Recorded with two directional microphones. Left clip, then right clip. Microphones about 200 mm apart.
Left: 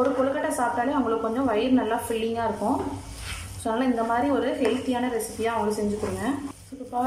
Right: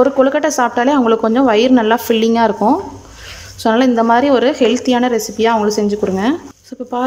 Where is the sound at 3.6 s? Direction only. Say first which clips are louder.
Right 13 dB; 55° right (ahead or behind).